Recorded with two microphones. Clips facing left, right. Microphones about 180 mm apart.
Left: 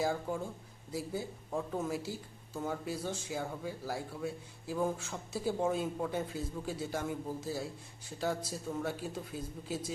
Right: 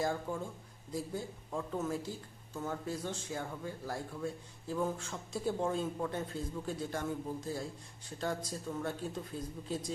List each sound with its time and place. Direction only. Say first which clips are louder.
0.0 s a man's voice: left 1 dB; 5° left (ahead or behind)